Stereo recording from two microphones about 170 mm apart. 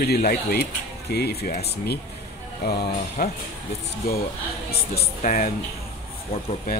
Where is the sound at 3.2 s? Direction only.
60° left (ahead or behind).